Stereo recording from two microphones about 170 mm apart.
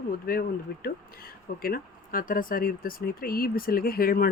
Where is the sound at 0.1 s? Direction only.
60° left (ahead or behind).